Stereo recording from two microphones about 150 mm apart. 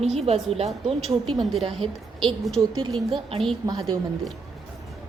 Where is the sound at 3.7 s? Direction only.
30° right (ahead or behind).